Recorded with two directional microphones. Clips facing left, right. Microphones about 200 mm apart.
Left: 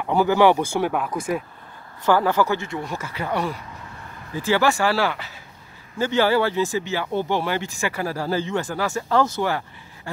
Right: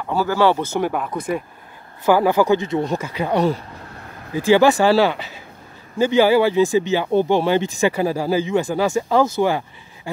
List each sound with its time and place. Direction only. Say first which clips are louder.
0.0 s speech: left 1 dB; 20° left (ahead or behind)
0.8 s speech: right 1 dB; centre (ahead or behind)
2.0 s speech: right 4 dB; 15° right (ahead or behind)